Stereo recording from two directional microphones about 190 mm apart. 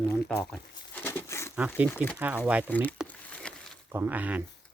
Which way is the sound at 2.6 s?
10° left (ahead or behind).